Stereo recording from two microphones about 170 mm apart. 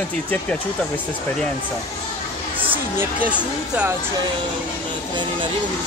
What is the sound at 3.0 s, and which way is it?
Speech, 10° right (ahead or behind).